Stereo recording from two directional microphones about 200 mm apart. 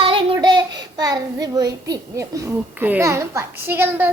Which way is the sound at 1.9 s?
15° right (ahead or behind).